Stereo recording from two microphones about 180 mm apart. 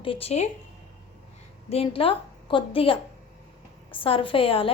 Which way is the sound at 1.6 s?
35° left (ahead or behind).